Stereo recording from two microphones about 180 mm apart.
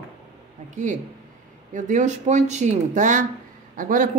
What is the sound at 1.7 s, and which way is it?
Speech, 45° right (ahead or behind).